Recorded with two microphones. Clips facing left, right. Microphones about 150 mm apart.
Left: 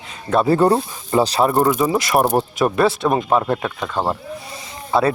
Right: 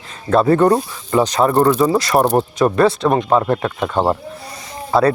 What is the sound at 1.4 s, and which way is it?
Speech, 10° left (ahead or behind).